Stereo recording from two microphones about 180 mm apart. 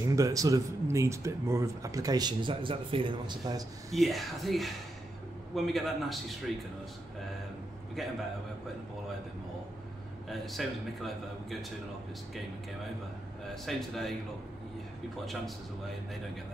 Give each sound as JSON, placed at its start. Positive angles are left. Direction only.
{"t": 0.0, "sound": "speech", "side_deg": -20}
{"t": 3.9, "sound": "speech", "side_deg": 0}
{"t": 10.3, "sound": "speech", "side_deg": 0}
{"t": 13.7, "sound": "speech", "side_deg": 0}